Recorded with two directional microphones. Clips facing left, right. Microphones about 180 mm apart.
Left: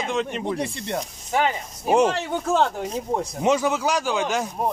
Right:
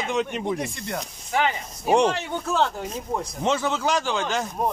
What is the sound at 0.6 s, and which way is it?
Speech, 30° left (ahead or behind).